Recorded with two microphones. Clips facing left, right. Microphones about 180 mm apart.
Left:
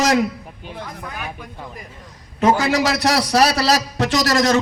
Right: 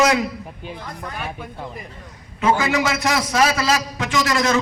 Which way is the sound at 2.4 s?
40° left (ahead or behind).